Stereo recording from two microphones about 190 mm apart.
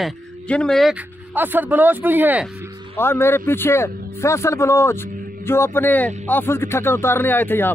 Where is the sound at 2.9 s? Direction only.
10° left (ahead or behind).